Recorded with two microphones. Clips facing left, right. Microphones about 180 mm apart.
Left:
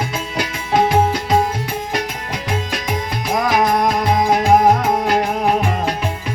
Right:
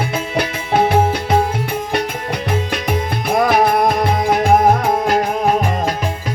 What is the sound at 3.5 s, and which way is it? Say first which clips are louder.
Music: even; 60° right (ahead or behind).